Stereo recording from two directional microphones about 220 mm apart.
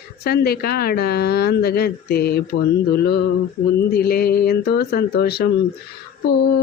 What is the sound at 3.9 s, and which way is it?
Mantra, 45° left (ahead or behind).